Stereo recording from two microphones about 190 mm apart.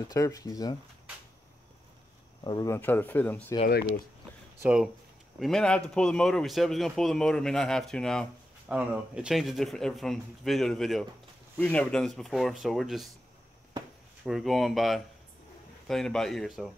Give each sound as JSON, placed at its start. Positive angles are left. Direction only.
{"t": 0.1, "sound": "speech", "side_deg": 20}
{"t": 2.4, "sound": "speech", "side_deg": 20}
{"t": 4.6, "sound": "a man's voice", "side_deg": -5}
{"t": 14.2, "sound": "a man's voice", "side_deg": 0}